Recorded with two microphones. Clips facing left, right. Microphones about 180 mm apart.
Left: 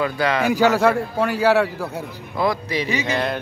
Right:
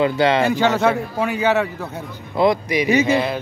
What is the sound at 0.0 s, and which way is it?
Speech, 25° right (ahead or behind).